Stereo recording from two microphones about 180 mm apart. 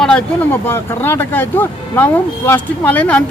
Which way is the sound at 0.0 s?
10° left (ahead or behind).